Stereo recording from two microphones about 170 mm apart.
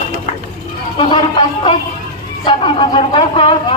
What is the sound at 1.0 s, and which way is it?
A woman's voice, 30° left (ahead or behind).